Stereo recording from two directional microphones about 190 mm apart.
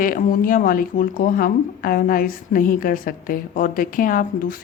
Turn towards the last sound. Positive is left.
turn(degrees=45)  # may be behind; listen again after turning